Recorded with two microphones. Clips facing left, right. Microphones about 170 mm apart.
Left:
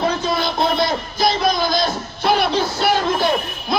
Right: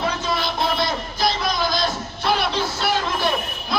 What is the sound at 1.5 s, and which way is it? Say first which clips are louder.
Music: left 4 dB; 35° left (ahead or behind).